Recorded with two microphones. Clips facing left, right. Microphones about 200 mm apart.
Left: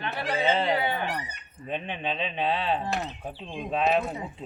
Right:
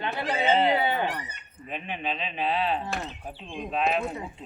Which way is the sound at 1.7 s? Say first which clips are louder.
Left 2 dB; 30° left (ahead or behind).